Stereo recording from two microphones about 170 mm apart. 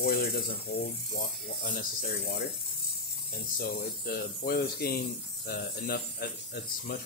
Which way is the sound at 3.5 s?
60° left (ahead or behind).